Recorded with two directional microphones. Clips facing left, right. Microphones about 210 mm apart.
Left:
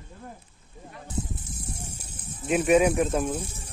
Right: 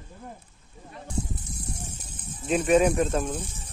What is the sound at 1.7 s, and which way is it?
Snake, 10° left (ahead or behind).